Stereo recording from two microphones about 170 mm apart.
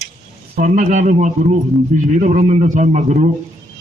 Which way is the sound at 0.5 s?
45° right (ahead or behind).